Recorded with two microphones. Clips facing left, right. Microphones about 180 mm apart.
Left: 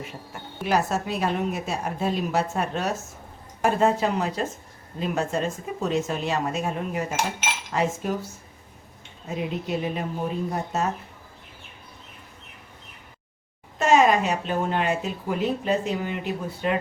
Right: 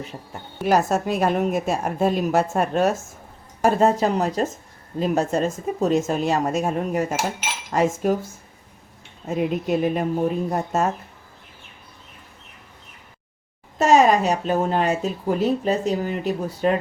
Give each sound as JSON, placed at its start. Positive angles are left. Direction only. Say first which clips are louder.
{"t": 0.6, "sound": "a woman's voice", "louder": "right 5 dB", "side_deg": -45}
{"t": 9.2, "sound": "a woman's voice", "louder": "right 6 dB", "side_deg": -50}
{"t": 13.7, "sound": "speech", "louder": "right 3 dB", "side_deg": -40}